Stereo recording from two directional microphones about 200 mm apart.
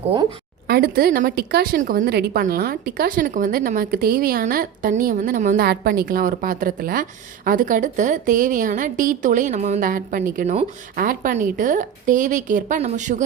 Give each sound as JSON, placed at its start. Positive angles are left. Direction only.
{"t": 0.7, "sound": "a woman's voice", "side_deg": -50}